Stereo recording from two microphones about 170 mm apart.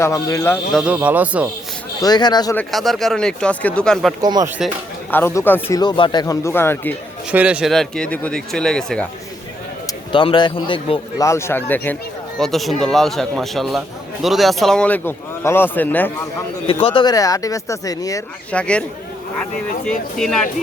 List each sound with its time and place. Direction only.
0.0 s speech: 15° left (ahead or behind)
0.7 s a man's voice: centre (ahead or behind)
2.0 s speech: 25° left (ahead or behind)
2.6 s a man's voice: centre (ahead or behind)
4.2 s speech: 25° right (ahead or behind)
5.1 s speech: 15° left (ahead or behind)
7.3 s a man's voice: 5° right (ahead or behind)
9.8 s speech: 30° left (ahead or behind)
11.2 s a man's voice: 15° left (ahead or behind)
16.8 s speech: 30° left (ahead or behind)
18.5 s speech: 5° left (ahead or behind)
20.1 s a man's voice: centre (ahead or behind)